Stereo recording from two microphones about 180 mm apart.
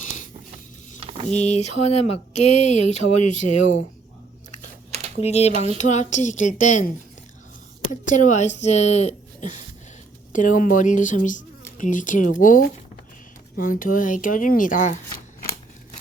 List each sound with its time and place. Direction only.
0.9 s vehicle: 30° right (ahead or behind)
1.3 s speech: 35° left (ahead or behind)
5.2 s speech: 35° left (ahead or behind)
8.0 s speech: 45° left (ahead or behind)